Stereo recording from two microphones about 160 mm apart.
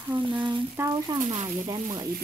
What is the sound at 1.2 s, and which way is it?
Speech, 45° right (ahead or behind).